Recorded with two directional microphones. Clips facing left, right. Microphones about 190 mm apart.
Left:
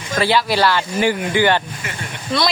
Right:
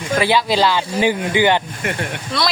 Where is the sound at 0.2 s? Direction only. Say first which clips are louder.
Even; 15° right (ahead or behind).